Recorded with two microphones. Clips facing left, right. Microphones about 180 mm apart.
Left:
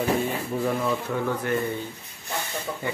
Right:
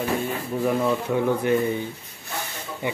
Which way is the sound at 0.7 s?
15° right (ahead or behind).